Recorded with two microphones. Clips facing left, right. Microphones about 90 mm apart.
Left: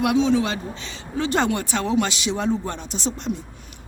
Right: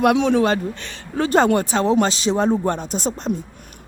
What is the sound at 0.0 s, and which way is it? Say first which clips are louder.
A woman's voice: right 3 dB; 55° right (ahead or behind).